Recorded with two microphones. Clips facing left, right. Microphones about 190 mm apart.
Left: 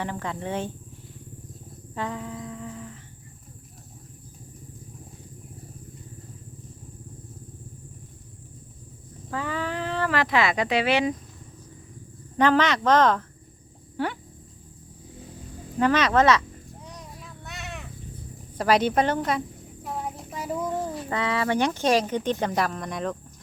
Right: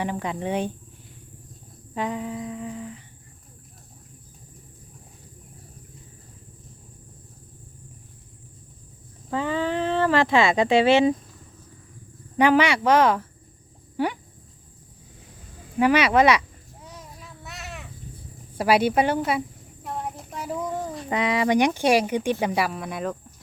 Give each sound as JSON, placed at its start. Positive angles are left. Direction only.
{"t": 0.0, "sound": "speech", "side_deg": -15}
{"t": 2.0, "sound": "speech", "side_deg": -15}
{"t": 9.3, "sound": "speech", "side_deg": -25}
{"t": 12.4, "sound": "speech", "side_deg": -10}
{"t": 15.8, "sound": "speech", "side_deg": -10}
{"t": 16.8, "sound": "a sound", "side_deg": 0}
{"t": 18.5, "sound": "speech", "side_deg": -10}
{"t": 19.8, "sound": "a sound", "side_deg": 0}
{"t": 21.1, "sound": "speech", "side_deg": -15}